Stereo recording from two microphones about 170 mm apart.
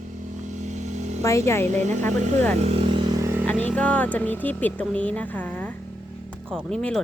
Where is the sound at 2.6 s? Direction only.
35° right (ahead or behind).